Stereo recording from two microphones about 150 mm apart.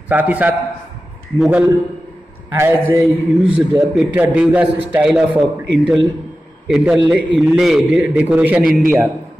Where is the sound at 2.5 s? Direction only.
15° right (ahead or behind).